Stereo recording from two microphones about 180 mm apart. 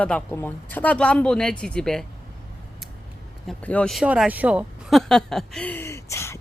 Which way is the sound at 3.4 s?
10° left (ahead or behind).